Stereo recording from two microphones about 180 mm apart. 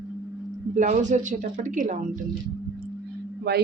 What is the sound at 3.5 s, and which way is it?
Speech, 65° right (ahead or behind).